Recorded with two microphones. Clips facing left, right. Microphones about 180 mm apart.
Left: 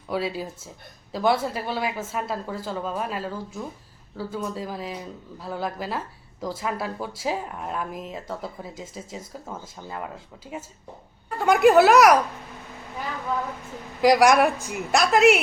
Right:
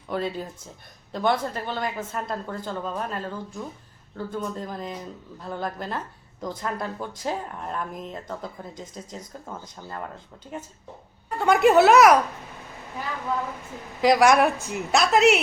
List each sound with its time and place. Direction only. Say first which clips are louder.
0.1 s a woman's voice: left 1 dB; 5° left (ahead or behind)
14.0 s speech: left 1 dB; centre (ahead or behind)